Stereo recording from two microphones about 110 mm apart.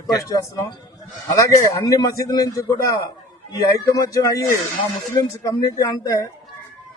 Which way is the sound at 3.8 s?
30° left (ahead or behind).